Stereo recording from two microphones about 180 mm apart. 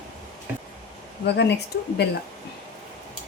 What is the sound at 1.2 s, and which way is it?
Speech, 70° left (ahead or behind).